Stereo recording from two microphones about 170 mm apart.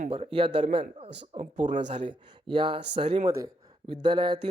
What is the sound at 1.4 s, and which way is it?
Speech, 45° right (ahead or behind).